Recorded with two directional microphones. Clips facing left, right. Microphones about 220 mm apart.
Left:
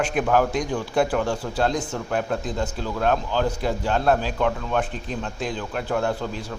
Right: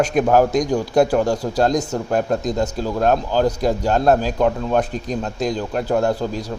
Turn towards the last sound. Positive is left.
turn(degrees=-40)  # may be behind; listen again after turning